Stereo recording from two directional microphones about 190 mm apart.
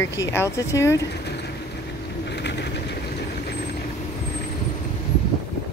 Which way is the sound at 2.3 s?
65° left (ahead or behind).